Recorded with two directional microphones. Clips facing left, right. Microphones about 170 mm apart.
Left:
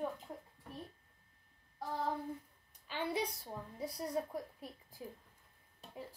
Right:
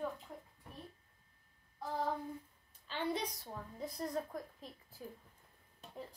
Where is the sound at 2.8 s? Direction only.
10° left (ahead or behind).